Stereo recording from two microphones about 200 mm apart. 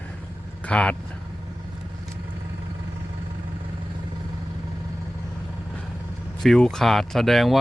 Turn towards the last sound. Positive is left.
turn(degrees=0)  # may be behind; listen again after turning